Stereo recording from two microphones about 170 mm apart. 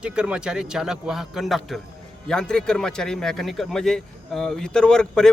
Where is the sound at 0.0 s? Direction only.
5° right (ahead or behind).